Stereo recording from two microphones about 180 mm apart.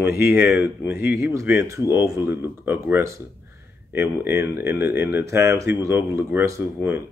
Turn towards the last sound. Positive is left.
turn(degrees=-15)  # may be behind; listen again after turning